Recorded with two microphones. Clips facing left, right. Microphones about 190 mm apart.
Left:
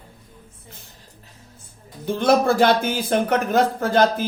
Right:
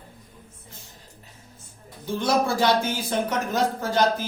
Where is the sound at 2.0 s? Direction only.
60° left (ahead or behind).